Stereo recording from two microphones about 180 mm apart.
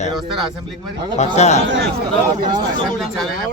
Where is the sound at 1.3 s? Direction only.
40° left (ahead or behind).